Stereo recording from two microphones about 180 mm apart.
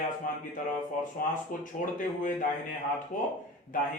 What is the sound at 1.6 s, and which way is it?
Speech, 45° left (ahead or behind).